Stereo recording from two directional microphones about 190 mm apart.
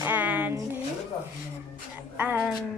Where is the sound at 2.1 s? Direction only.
10° right (ahead or behind).